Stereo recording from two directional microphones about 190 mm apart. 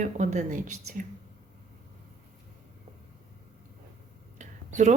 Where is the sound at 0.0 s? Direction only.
40° right (ahead or behind).